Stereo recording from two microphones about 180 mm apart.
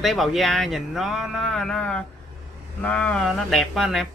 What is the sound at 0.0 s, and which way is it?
Speech, centre (ahead or behind).